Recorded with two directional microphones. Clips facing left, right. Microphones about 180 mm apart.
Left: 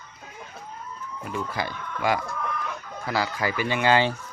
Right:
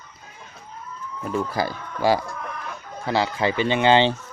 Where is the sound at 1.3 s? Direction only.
35° right (ahead or behind).